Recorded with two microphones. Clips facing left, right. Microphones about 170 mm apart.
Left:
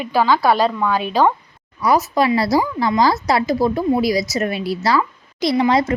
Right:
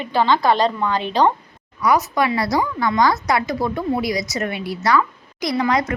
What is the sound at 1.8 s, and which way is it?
Speech, 30° left (ahead or behind).